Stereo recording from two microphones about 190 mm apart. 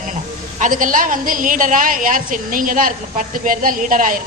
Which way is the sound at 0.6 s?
45° right (ahead or behind).